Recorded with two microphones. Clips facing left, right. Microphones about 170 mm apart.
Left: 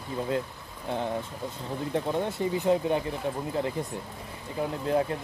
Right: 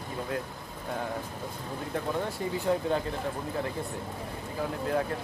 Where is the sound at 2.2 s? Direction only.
20° left (ahead or behind).